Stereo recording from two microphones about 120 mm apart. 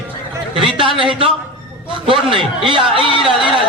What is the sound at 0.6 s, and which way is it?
A man's voice, 45° right (ahead or behind).